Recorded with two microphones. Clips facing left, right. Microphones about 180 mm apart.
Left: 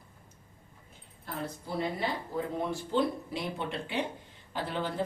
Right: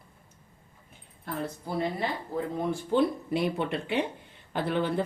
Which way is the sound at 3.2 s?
60° right (ahead or behind).